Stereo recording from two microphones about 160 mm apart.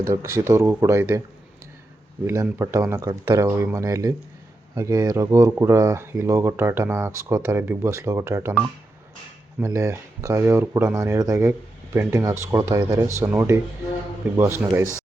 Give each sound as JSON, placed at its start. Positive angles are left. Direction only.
{"t": 0.1, "sound": "speech", "side_deg": -15}
{"t": 2.2, "sound": "speech", "side_deg": -15}
{"t": 9.6, "sound": "speech", "side_deg": -20}